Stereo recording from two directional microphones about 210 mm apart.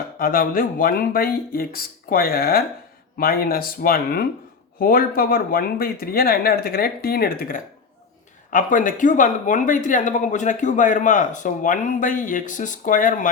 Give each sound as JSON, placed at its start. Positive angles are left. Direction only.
{"t": 0.2, "sound": "speech", "side_deg": 45}